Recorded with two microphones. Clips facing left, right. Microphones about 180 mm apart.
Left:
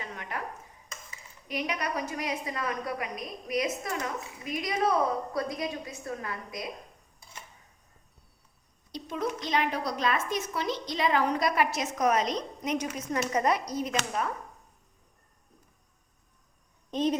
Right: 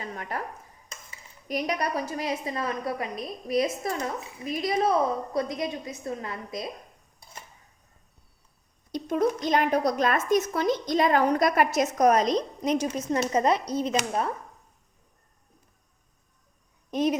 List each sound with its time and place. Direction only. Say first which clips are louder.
0.0 s dishes: right 4 dB; 40° right (ahead or behind)
1.5 s a woman's voice: right 4 dB; 40° right (ahead or behind)
8.9 s a woman's voice: right 7 dB; 50° right (ahead or behind); by 14.3 s 30° right (ahead or behind)
16.9 s a woman's voice: right 2 dB; 10° right (ahead or behind)